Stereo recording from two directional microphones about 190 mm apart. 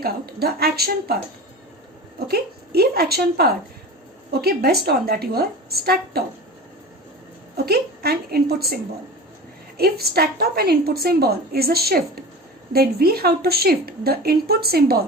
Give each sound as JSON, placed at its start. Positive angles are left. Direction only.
{"t": 0.0, "sound": "a woman's voice", "side_deg": -55}
{"t": 2.1, "sound": "a woman's voice", "side_deg": -55}
{"t": 7.5, "sound": "a woman's voice", "side_deg": -55}
{"t": 9.7, "sound": "a woman's voice", "side_deg": -55}